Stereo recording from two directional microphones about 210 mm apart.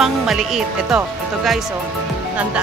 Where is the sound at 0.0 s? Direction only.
Centre (ahead or behind).